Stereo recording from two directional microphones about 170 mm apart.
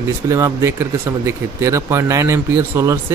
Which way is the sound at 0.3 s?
15° right (ahead or behind).